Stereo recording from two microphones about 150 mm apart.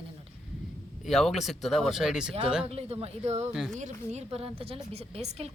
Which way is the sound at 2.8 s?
40° right (ahead or behind).